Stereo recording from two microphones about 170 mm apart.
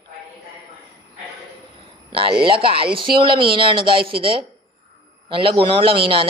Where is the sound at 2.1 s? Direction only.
30° right (ahead or behind).